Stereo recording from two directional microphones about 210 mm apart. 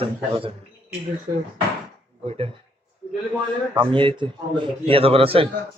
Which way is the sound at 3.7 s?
25° right (ahead or behind).